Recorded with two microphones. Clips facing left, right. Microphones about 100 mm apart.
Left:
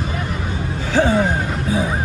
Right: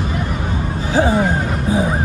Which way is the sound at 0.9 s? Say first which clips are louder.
Right 1 dB; 25° right (ahead or behind).